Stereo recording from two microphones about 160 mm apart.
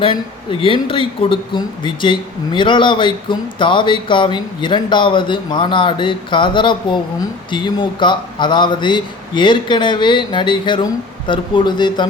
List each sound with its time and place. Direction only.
0.0 s a man's voice: 35° left (ahead or behind)